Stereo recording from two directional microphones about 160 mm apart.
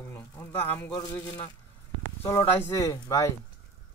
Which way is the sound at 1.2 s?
25° left (ahead or behind).